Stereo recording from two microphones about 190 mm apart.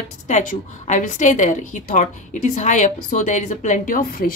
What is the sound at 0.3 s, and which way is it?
A woman's voice, 40° left (ahead or behind).